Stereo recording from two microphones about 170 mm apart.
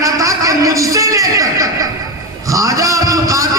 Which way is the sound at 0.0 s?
20° right (ahead or behind).